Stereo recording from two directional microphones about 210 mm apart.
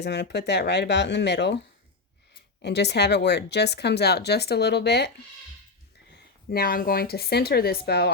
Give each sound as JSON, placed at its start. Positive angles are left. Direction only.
{"t": 0.0, "sound": "speech", "side_deg": 55}
{"t": 6.5, "sound": "speech", "side_deg": 45}